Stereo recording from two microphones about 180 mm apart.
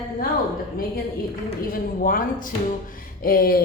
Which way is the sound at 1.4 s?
55° left (ahead or behind).